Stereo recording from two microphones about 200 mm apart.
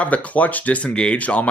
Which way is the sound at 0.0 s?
5° left (ahead or behind).